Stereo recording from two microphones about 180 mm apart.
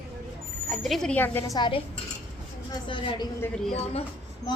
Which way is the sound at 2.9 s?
25° left (ahead or behind).